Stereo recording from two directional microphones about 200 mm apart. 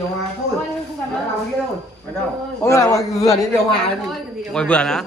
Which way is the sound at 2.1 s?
10° left (ahead or behind).